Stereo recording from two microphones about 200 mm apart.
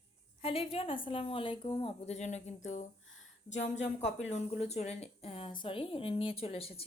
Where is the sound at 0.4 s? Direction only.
30° left (ahead or behind).